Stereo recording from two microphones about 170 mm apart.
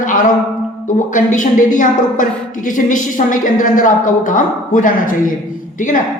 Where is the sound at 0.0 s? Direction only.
50° left (ahead or behind).